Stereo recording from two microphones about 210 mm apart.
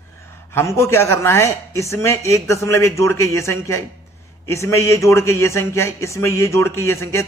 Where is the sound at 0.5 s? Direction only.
10° left (ahead or behind).